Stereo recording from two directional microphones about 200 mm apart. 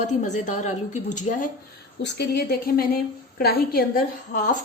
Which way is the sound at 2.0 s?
55° left (ahead or behind).